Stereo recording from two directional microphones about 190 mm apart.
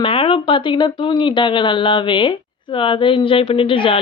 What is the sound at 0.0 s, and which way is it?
A woman's voice, 30° left (ahead or behind).